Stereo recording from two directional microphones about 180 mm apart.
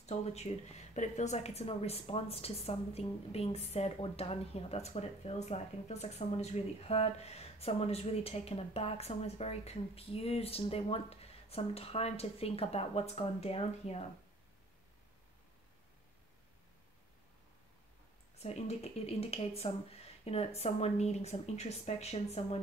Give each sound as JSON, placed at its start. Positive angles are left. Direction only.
{"t": 0.0, "sound": "a woman's voice", "side_deg": 35}
{"t": 18.4, "sound": "a woman's voice", "side_deg": 35}